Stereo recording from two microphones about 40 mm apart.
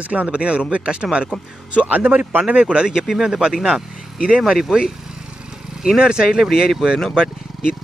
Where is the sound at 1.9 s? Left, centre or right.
Right.